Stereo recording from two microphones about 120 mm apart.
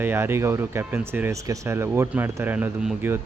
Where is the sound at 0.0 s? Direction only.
20° right (ahead or behind).